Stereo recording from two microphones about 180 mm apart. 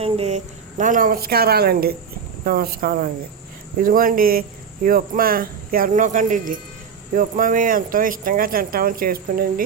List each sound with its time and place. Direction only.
0.0 s speech: 35° right (ahead or behind); by 9.6 s 55° right (ahead or behind)